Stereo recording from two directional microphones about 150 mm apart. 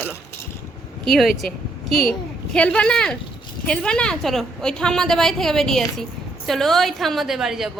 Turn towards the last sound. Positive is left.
turn(degrees=0)  # may be behind; listen again after turning